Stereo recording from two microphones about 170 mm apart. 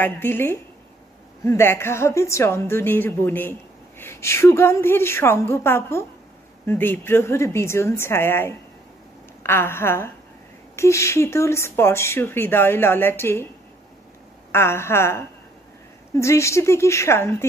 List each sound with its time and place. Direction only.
0.0 s speech: 10° left (ahead or behind)
14.5 s speech: 15° left (ahead or behind)